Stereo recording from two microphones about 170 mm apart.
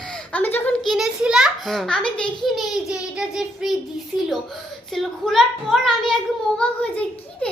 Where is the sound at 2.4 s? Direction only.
Centre (ahead or behind).